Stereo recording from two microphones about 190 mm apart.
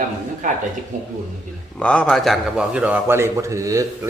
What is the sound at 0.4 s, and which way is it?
Speech, 40° right (ahead or behind).